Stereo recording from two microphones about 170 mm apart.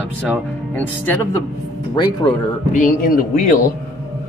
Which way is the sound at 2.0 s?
25° left (ahead or behind).